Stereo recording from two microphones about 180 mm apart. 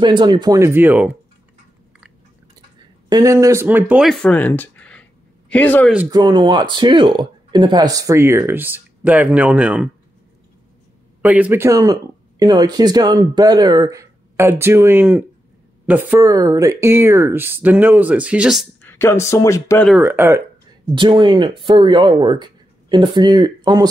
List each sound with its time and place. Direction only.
0.0 s speech: 25° right (ahead or behind)
3.1 s speech: 20° right (ahead or behind); by 5.9 s 10° left (ahead or behind)
6.0 s speech: 20° right (ahead or behind); by 9.8 s 5° right (ahead or behind)
11.2 s speech: 10° right (ahead or behind)
18.8 s speech: 15° left (ahead or behind)
20.0 s speech: 15° right (ahead or behind)
20.9 s speech: 25° right (ahead or behind)